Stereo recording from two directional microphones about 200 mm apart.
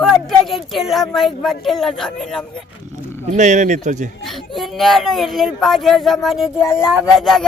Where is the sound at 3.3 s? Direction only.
35° right (ahead or behind).